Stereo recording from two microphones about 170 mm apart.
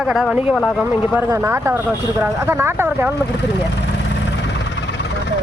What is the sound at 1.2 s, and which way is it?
Speech, 15° right (ahead or behind).